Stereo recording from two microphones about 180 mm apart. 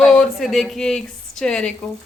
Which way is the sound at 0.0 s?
5° left (ahead or behind).